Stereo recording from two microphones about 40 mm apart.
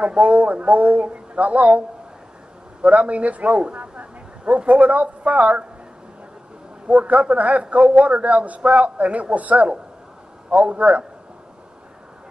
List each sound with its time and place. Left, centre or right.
0.0 s a man's voice: right
6.9 s a man's voice: right